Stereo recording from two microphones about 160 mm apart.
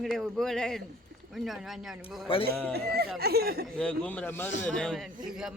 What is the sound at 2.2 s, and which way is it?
Speech, 35° left (ahead or behind).